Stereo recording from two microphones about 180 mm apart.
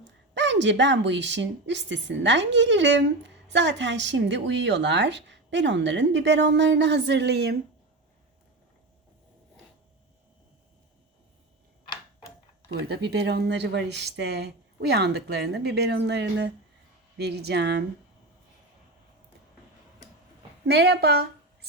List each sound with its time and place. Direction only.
0.3 s a woman's voice: 80° right; by 7.5 s 65° right (ahead or behind)
13.1 s speech: 65° right (ahead or behind)
20.7 s a woman's voice: 65° right (ahead or behind)